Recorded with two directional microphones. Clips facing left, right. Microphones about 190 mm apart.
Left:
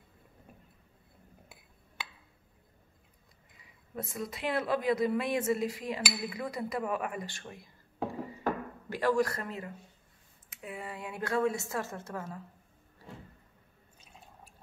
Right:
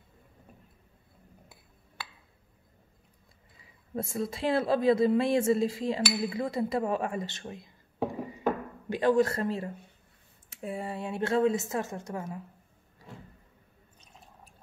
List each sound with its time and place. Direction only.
3.9 s a woman's voice: 30° right (ahead or behind)